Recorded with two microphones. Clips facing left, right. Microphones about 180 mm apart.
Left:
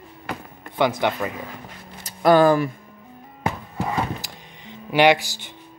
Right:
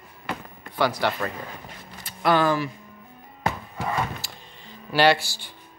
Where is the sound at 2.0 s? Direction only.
45° left (ahead or behind).